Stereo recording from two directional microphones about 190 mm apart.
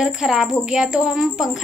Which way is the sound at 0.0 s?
Centre (ahead or behind).